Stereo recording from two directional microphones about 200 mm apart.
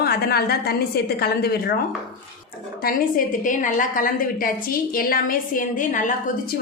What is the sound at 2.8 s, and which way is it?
A woman's voice, 45° left (ahead or behind).